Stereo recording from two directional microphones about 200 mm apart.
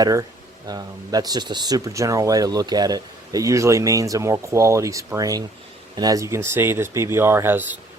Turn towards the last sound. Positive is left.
turn(degrees=-10)  # may be behind; listen again after turning